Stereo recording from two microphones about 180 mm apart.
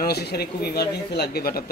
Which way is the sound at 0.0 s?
60° left (ahead or behind).